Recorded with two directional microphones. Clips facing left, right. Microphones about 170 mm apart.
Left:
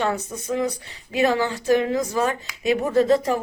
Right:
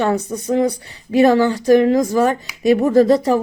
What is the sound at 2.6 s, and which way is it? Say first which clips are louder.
Speech: right 6 dB; 40° right (ahead or behind).